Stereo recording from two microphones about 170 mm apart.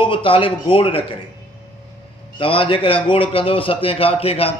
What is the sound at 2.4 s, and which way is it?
A man's voice, 30° left (ahead or behind).